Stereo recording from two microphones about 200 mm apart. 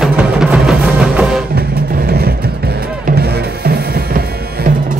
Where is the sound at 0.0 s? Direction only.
5° right (ahead or behind).